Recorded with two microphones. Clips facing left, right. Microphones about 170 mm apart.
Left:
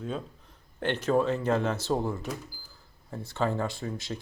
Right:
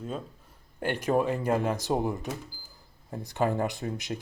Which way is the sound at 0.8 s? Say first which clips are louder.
Left 1 dB; 10° right (ahead or behind).